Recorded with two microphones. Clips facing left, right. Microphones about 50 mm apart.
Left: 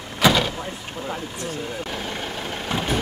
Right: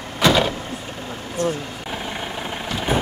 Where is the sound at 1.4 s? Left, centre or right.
Right.